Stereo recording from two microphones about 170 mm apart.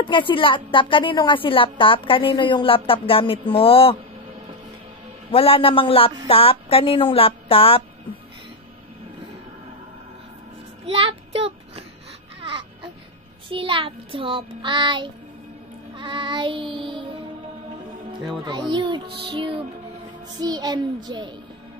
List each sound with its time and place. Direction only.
0.0 s a woman's voice: 30° left (ahead or behind)
5.3 s a woman's voice: 35° left (ahead or behind)
10.9 s child singing: 35° right (ahead or behind)
12.4 s baby cry: 30° right (ahead or behind)
13.5 s child singing: 30° right (ahead or behind)
16.0 s music: 30° right (ahead or behind)
18.3 s music: 25° right (ahead or behind)
19.1 s child singing: 30° right (ahead or behind)
20.3 s music: 25° right (ahead or behind)